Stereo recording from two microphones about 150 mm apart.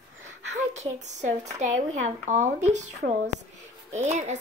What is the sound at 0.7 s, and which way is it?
A woman's voice, 50° right (ahead or behind).